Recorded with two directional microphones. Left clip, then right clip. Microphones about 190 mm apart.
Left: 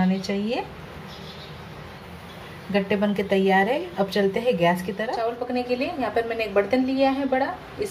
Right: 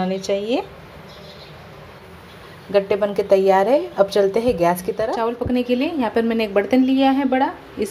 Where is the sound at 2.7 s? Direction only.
30° right (ahead or behind).